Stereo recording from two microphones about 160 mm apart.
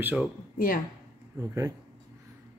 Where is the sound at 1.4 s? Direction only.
20° right (ahead or behind).